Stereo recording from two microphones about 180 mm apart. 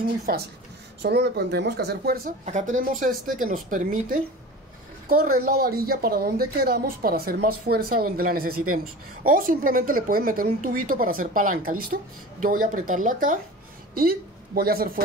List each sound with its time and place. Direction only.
0.3 s a woman's voice: 55° right (ahead or behind)
2.4 s a woman's voice: 45° right (ahead or behind)